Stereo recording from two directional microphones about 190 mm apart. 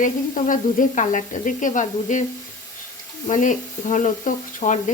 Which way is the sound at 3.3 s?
40° left (ahead or behind).